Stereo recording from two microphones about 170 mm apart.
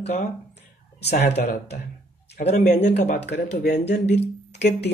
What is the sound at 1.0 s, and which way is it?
Speech, 75° left (ahead or behind).